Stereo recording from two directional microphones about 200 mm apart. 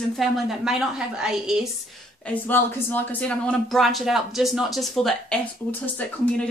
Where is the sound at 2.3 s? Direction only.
10° left (ahead or behind).